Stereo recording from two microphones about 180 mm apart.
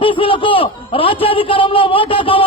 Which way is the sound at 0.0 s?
30° left (ahead or behind).